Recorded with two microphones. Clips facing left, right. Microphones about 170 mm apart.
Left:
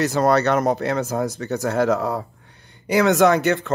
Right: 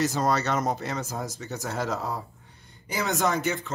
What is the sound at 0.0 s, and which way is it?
Speech, 65° left (ahead or behind).